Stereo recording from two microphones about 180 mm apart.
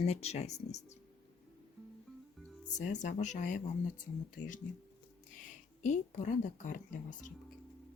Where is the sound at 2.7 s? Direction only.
40° left (ahead or behind).